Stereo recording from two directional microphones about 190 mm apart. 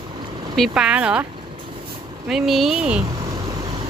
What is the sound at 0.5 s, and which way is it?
Speech, centre (ahead or behind).